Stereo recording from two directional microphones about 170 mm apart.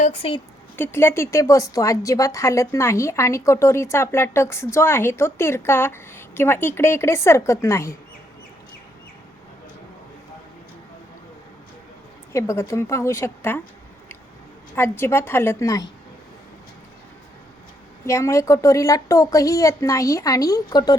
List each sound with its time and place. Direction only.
0.0 s a woman's voice: 35° left (ahead or behind)
0.8 s a woman's voice: 15° left (ahead or behind)
12.3 s a woman's voice: 15° left (ahead or behind)
14.8 s a woman's voice: 15° left (ahead or behind)
18.0 s a woman's voice: 15° left (ahead or behind)